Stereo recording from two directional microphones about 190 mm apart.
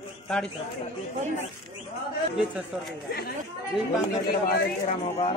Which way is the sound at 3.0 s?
55° left (ahead or behind).